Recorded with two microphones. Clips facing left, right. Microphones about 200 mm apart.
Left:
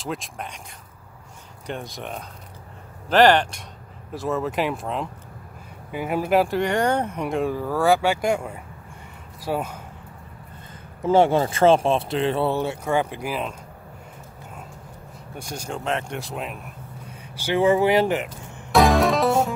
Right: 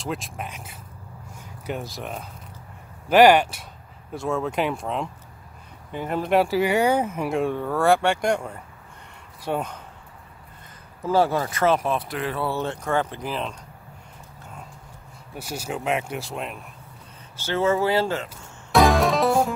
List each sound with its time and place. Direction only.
0.0 s speech: centre (ahead or behind)
11.0 s speech: 20° left (ahead or behind)
12.5 s speech: 10° left (ahead or behind)
15.3 s speech: 5° right (ahead or behind)
17.4 s speech: 15° left (ahead or behind)
18.7 s music: centre (ahead or behind)